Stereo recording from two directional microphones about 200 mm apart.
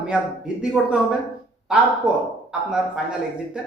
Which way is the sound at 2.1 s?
5° right (ahead or behind).